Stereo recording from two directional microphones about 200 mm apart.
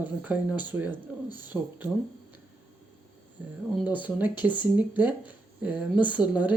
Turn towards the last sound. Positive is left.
turn(degrees=-5)  # may be behind; listen again after turning